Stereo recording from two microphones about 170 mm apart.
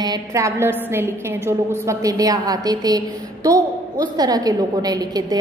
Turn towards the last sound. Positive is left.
turn(degrees=-25)  # may be behind; listen again after turning